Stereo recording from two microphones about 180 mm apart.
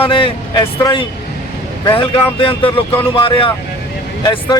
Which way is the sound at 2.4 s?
30° left (ahead or behind).